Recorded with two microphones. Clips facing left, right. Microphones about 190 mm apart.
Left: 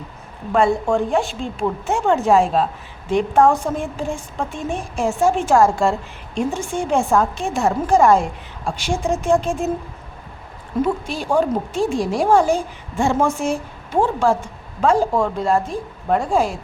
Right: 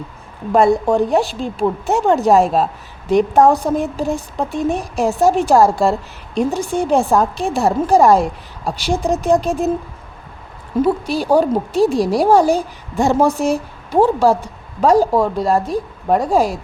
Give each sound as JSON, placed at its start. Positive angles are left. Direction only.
{"t": 0.5, "sound": "a woman's voice", "side_deg": -40}
{"t": 10.8, "sound": "a woman's voice", "side_deg": -35}